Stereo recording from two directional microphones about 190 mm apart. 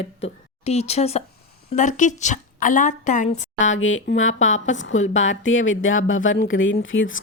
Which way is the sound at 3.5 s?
90° left.